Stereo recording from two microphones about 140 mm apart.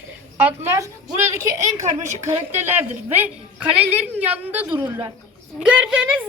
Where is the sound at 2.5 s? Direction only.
15° right (ahead or behind).